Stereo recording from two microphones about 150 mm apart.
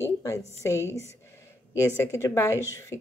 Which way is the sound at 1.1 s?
20° left (ahead or behind).